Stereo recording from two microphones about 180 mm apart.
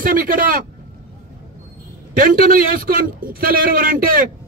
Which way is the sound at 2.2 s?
50° right (ahead or behind).